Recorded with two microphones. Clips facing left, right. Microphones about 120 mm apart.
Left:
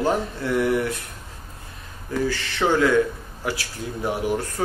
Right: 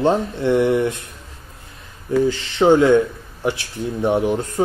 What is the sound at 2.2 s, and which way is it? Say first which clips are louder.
Speech: right 7 dB; 20° right (ahead or behind).